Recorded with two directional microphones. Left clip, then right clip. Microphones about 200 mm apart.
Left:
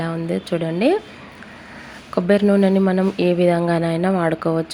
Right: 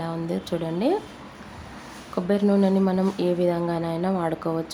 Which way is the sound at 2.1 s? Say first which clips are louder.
Left 6 dB; 20° left (ahead or behind).